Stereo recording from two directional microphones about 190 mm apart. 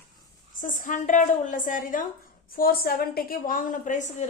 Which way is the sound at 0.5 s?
45° left (ahead or behind).